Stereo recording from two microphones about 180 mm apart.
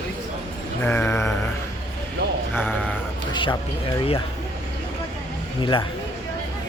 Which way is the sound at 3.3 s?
25° left (ahead or behind).